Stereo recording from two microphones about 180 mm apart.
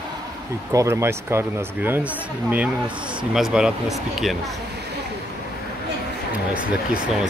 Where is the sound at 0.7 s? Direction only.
15° right (ahead or behind).